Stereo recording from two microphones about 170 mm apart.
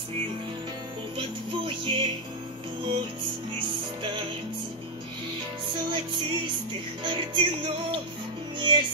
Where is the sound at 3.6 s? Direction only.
30° right (ahead or behind).